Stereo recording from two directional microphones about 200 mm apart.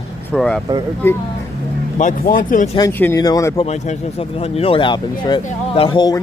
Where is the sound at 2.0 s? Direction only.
40° left (ahead or behind).